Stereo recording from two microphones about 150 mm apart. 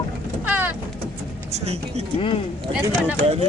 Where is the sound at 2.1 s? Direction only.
35° left (ahead or behind).